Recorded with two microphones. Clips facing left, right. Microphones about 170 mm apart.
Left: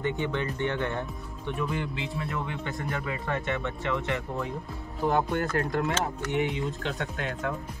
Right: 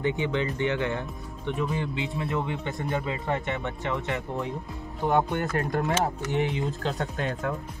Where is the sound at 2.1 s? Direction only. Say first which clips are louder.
Right 4 dB; 20° right (ahead or behind).